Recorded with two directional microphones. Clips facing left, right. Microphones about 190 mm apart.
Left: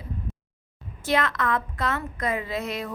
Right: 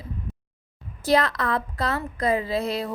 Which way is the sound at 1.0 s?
35° right (ahead or behind).